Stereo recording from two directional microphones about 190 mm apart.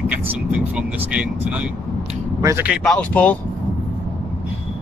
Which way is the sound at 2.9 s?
5° left (ahead or behind).